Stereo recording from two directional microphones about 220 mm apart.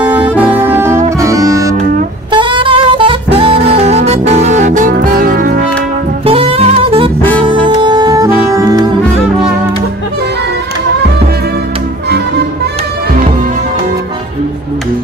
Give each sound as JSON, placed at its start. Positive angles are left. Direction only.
{"t": 0.3, "sound": "saxophone", "side_deg": -5}
{"t": 1.2, "sound": "music", "side_deg": -15}
{"t": 6.2, "sound": "saxophone", "side_deg": -25}
{"t": 7.4, "sound": "music", "side_deg": -20}
{"t": 8.5, "sound": "saxophone", "side_deg": -15}